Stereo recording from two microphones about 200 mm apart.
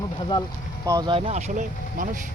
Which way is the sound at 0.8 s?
20° right (ahead or behind).